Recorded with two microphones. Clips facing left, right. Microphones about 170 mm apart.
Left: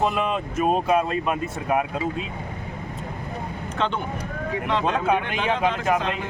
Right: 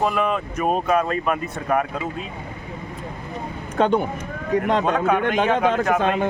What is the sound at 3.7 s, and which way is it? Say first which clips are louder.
A man's voice: right 8 dB; 45° right (ahead or behind).